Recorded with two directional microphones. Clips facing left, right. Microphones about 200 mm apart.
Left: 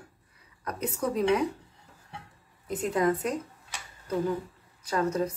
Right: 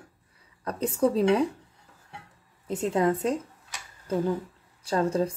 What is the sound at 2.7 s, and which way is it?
Speech, 25° right (ahead or behind).